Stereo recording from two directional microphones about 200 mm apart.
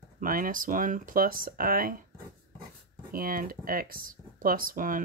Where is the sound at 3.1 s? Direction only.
45° right (ahead or behind).